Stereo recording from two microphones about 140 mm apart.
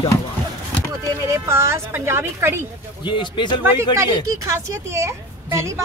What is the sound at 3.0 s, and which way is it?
Speech, 35° left (ahead or behind).